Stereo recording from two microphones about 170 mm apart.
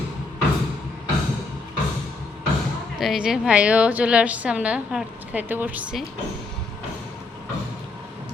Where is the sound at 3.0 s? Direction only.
Centre (ahead or behind).